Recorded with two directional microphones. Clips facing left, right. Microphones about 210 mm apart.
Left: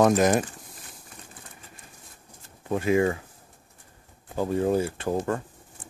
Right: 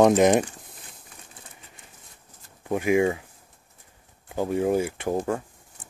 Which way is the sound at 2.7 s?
15° right (ahead or behind).